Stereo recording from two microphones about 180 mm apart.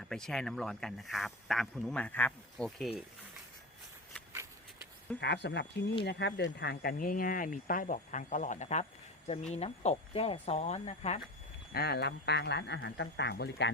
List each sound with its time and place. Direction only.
0.0 s speech: 5° left (ahead or behind)
5.2 s speech: 75° left (ahead or behind); by 11.2 s 40° left (ahead or behind)
11.7 s speech: 60° left (ahead or behind)